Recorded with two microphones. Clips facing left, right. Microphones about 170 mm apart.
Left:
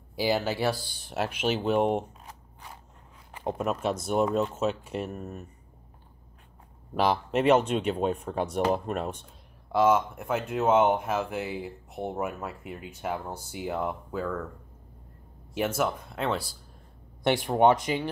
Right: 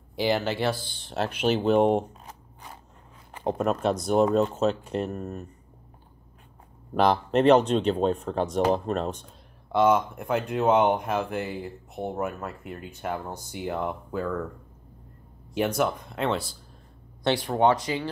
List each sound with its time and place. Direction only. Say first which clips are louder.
0.1 s speech: right 1 dB; 5° left (ahead or behind)
3.8 s speech: right 4 dB; 5° left (ahead or behind)
7.0 s speech: right 4 dB; 5° left (ahead or behind)
15.5 s speech: right 2 dB; 5° left (ahead or behind)
17.2 s speech: left 1 dB; 15° left (ahead or behind)